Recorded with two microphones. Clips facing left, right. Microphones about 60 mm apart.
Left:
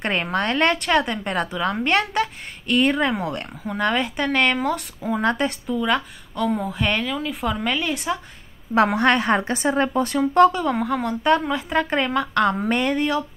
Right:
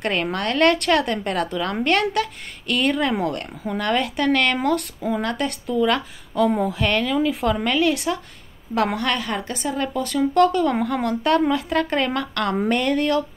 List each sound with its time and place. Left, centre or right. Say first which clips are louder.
0.0 s a woman's voice: even; left
5.2 s a woman's voice: left 7 dB; left
5.7 s a woman's voice: right 5 dB; centre
8.7 s a woman's voice: left 4 dB; left
10.6 s a woman's voice: right 1 dB; centre